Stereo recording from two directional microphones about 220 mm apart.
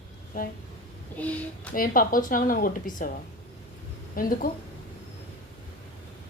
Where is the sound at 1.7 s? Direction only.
40° left (ahead or behind).